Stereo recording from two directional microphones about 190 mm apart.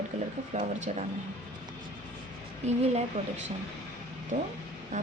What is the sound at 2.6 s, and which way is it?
Speech, 35° right (ahead or behind).